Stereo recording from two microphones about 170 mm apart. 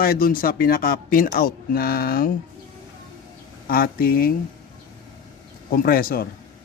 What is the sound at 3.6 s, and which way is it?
Speech, 60° left (ahead or behind).